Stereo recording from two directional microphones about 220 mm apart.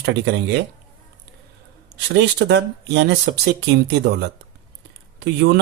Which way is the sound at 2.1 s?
50° right (ahead or behind).